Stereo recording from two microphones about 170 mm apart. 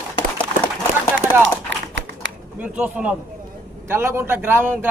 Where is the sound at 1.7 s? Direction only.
90° right.